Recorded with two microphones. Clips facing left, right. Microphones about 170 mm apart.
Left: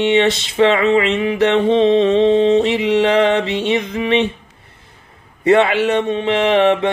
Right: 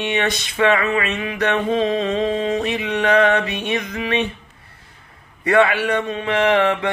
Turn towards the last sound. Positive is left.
turn(degrees=20)  # may be behind; listen again after turning